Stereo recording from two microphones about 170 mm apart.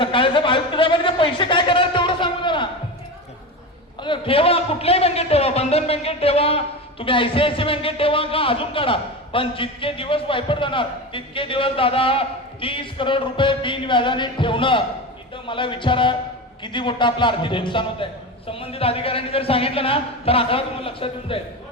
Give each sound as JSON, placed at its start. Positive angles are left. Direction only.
{"t": 0.0, "sound": "speech", "side_deg": 30}
{"t": 4.0, "sound": "a man's voice", "side_deg": 30}
{"t": 15.4, "sound": "music", "side_deg": 30}
{"t": 16.6, "sound": "a man's voice", "side_deg": 30}